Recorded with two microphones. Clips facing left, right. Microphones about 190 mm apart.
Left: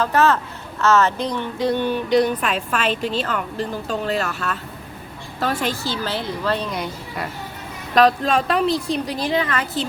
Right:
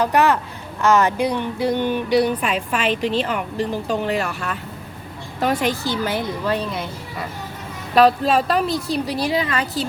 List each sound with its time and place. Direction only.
0.0 s a woman's voice: 15° right (ahead or behind)